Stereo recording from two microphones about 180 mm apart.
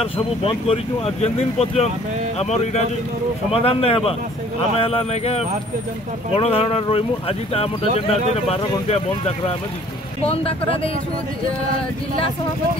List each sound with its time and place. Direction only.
0.0 s speech: 30° left (ahead or behind)